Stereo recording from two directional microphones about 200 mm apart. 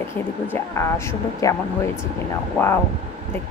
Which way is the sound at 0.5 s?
15° left (ahead or behind).